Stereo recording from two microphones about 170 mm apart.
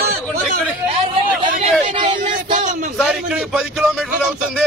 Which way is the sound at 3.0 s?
5° right (ahead or behind).